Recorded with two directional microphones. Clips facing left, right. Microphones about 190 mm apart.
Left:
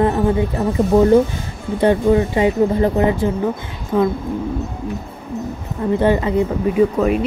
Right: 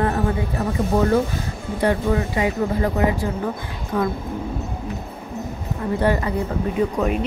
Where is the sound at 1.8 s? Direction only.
25° left (ahead or behind).